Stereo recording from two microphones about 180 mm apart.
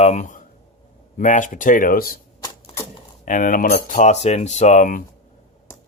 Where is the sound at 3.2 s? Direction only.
50° left (ahead or behind).